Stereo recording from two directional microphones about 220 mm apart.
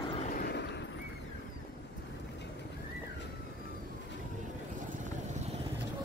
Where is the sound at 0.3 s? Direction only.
45° left (ahead or behind).